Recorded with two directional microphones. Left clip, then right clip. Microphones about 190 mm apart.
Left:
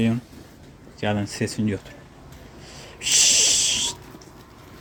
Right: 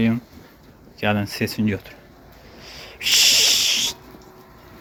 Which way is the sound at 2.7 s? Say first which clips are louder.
Right 4 dB; 15° left (ahead or behind).